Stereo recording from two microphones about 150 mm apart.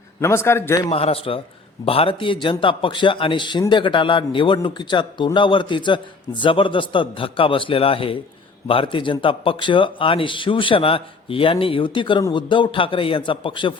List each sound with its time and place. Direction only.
0.2 s a man's voice: 15° left (ahead or behind)
0.9 s a man's voice: 40° left (ahead or behind)